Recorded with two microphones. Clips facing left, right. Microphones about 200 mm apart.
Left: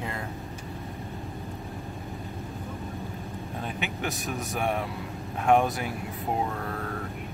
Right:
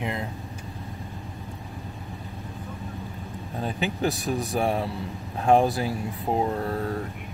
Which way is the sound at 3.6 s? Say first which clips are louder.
Right 7 dB; 35° right (ahead or behind).